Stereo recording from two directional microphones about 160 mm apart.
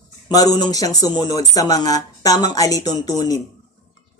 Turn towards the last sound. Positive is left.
turn(degrees=25)  # may be behind; listen again after turning